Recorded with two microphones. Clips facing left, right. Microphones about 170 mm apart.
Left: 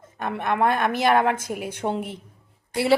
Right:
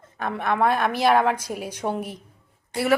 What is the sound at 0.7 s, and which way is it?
Speech, 55° left (ahead or behind).